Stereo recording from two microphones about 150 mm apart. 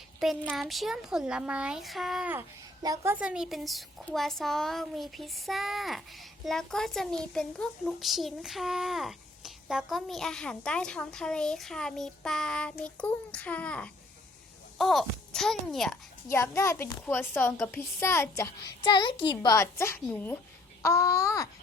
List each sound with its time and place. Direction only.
0.2 s a child's voice: centre (ahead or behind)
2.8 s a child's voice: 20° right (ahead or behind); by 16.0 s centre (ahead or behind)
16.3 s a child's voice: 20° left (ahead or behind)
18.8 s a child's voice: 30° left (ahead or behind)
19.5 s a child's voice: 15° left (ahead or behind)